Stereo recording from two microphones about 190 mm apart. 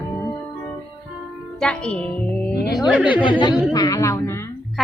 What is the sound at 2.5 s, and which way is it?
Speech, 55° left (ahead or behind).